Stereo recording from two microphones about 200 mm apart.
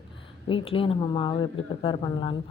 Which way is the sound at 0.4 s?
25° left (ahead or behind).